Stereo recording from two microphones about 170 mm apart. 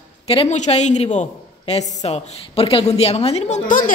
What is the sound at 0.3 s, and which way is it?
A woman's voice, 40° left (ahead or behind).